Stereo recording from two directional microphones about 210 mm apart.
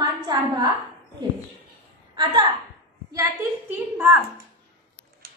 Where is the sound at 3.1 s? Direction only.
10° right (ahead or behind).